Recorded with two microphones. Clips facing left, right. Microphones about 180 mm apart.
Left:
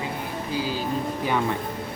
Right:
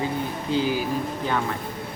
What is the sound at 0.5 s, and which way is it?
Speech, 20° right (ahead or behind).